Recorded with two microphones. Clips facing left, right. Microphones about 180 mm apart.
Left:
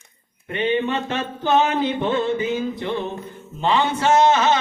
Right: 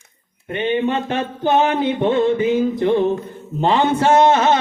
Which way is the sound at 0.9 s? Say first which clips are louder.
Right 3 dB; 55° right (ahead or behind).